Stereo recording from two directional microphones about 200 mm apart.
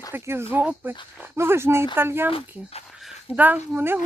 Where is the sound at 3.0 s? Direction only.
5° right (ahead or behind).